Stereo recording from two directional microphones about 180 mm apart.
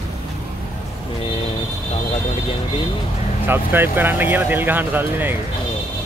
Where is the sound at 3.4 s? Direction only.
10° right (ahead or behind).